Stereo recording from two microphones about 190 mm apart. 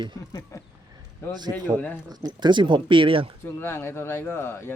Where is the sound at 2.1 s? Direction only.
20° right (ahead or behind).